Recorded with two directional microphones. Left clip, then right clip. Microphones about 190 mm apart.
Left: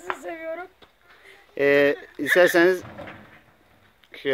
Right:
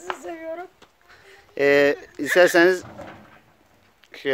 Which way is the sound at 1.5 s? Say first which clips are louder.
Right 1 dB; centre (ahead or behind).